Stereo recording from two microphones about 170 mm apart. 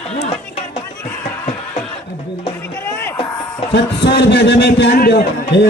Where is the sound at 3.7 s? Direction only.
85° left.